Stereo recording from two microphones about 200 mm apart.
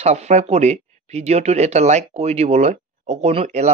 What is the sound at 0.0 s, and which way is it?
Speech, 35° right (ahead or behind).